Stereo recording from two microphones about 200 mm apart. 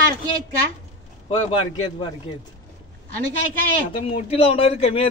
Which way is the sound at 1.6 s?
25° left (ahead or behind).